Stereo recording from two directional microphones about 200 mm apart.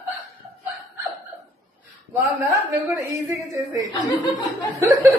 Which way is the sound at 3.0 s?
15° right (ahead or behind).